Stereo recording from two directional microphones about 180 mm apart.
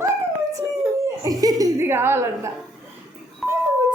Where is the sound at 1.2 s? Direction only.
20° right (ahead or behind).